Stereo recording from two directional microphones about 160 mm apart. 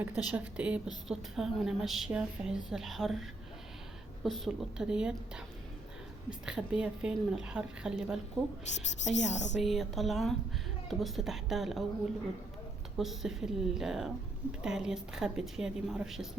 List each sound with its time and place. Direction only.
0.0 s a woman's voice: 10° right (ahead or behind)
6.4 s speech: 5° right (ahead or behind)
8.6 s a woman's voice: 45° left (ahead or behind)
9.6 s speech: centre (ahead or behind)
13.0 s speech: centre (ahead or behind)